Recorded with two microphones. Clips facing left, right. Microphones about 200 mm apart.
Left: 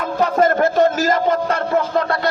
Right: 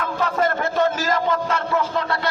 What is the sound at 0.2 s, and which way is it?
A man's voice, 45° left (ahead or behind).